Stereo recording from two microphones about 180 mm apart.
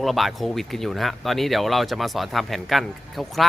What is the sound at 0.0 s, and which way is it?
Speech, centre (ahead or behind).